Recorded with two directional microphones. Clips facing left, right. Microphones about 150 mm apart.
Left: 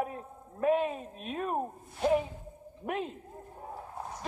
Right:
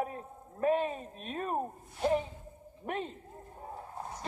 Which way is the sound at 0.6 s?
35° right (ahead or behind).